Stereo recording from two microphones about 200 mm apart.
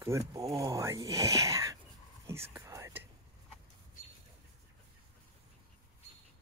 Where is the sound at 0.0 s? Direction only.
15° right (ahead or behind).